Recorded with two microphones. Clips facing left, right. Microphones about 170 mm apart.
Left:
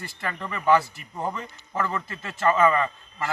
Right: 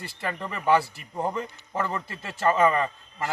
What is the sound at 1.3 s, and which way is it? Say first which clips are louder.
Speech: right 2 dB; 30° right (ahead or behind).